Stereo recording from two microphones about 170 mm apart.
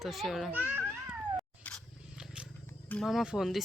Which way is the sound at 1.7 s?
10° left (ahead or behind).